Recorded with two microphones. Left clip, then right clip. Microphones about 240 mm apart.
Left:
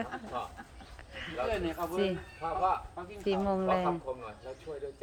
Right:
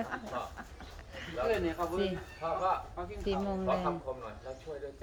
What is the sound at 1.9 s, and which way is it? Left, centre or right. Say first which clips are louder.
Snicker: left 2 dB; centre.